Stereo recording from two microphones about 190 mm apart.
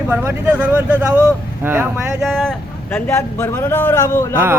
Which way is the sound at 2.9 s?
15° left (ahead or behind).